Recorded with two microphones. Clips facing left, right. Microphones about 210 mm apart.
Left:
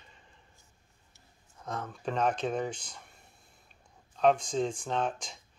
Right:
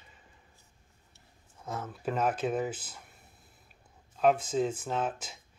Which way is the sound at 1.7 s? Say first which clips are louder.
Right 1 dB; 5° right (ahead or behind).